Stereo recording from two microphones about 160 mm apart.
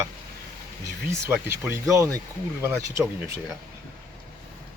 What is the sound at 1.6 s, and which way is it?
Speech, 15° right (ahead or behind).